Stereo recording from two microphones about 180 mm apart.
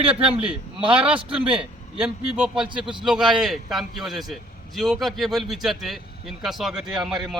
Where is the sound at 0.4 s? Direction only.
30° right (ahead or behind).